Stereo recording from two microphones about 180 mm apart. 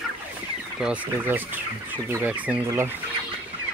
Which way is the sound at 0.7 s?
10° right (ahead or behind).